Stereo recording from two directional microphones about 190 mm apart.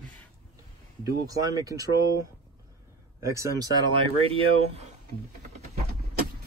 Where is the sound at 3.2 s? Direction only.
15° right (ahead or behind).